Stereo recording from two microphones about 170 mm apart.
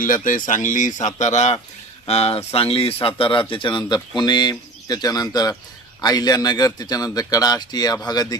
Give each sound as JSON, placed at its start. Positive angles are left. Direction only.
{"t": 0.0, "sound": "a man's voice", "side_deg": 50}